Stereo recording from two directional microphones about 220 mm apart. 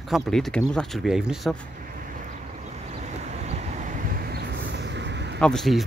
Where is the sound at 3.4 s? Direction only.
30° right (ahead or behind); by 5.4 s 50° right (ahead or behind).